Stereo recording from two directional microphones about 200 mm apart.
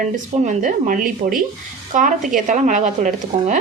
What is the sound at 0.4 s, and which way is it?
Speech, 40° right (ahead or behind).